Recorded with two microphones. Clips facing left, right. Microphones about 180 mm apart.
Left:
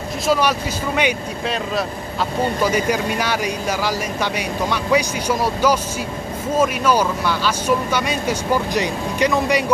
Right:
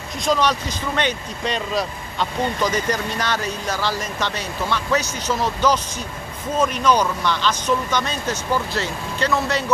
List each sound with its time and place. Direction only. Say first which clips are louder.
0.3 s speech: left 1 dB; 10° left (ahead or behind)